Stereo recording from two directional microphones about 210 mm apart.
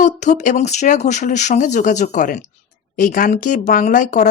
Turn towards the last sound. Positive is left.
turn(degrees=35)  # may be behind; listen again after turning